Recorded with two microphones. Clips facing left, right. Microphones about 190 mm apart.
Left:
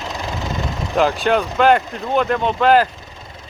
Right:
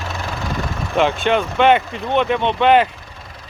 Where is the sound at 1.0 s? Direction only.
Centre (ahead or behind).